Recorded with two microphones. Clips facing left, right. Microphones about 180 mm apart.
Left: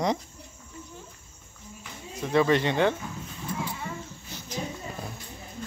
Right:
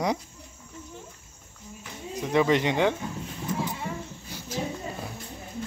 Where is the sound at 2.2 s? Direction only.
15° right (ahead or behind).